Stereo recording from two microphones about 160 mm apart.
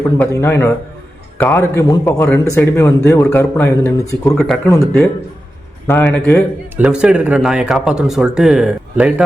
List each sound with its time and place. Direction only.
0.2 s speech: 15° left (ahead or behind)
4.4 s speech: 5° left (ahead or behind)
6.7 s speech: 5° right (ahead or behind)